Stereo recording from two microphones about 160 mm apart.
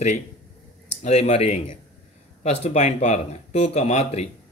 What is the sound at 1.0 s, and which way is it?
Speech, 45° left (ahead or behind).